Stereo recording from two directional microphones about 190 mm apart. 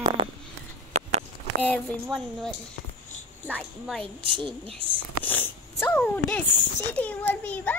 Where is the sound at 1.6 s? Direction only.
10° left (ahead or behind).